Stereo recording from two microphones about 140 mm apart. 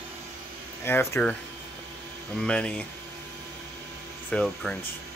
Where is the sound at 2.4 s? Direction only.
5° left (ahead or behind).